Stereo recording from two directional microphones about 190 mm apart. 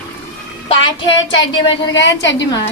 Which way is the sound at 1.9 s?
70° left (ahead or behind).